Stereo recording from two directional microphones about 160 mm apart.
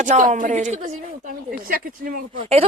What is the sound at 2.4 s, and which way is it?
Speech, 35° right (ahead or behind).